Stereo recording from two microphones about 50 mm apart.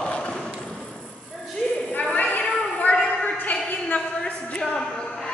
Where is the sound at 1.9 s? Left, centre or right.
Left.